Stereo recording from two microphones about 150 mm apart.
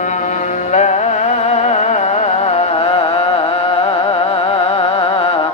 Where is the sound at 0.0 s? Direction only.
55° left (ahead or behind); by 5.5 s 35° left (ahead or behind).